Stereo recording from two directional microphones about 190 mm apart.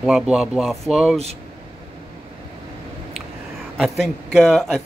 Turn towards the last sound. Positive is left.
turn(degrees=0)  # may be behind; listen again after turning